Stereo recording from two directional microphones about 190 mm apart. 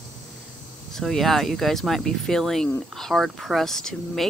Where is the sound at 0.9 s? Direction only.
Centre (ahead or behind).